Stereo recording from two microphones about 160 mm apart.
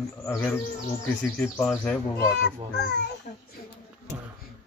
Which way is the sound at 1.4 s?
10° left (ahead or behind).